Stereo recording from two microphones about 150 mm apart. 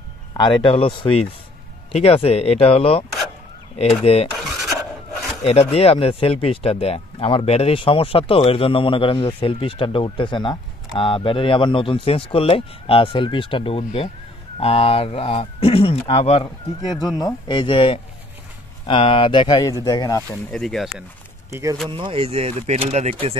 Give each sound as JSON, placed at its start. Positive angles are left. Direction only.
{"t": 0.3, "sound": "speech", "side_deg": 30}
{"t": 4.4, "sound": "scratch", "side_deg": 0}
{"t": 5.4, "sound": "speech", "side_deg": 40}
{"t": 17.2, "sound": "speech", "side_deg": 30}
{"t": 20.2, "sound": "speech", "side_deg": 5}
{"t": 21.5, "sound": "speech", "side_deg": -20}
{"t": 21.8, "sound": "speech", "side_deg": -35}